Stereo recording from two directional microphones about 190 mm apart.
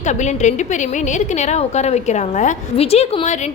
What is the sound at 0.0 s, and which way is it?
A woman's voice, 40° left (ahead or behind).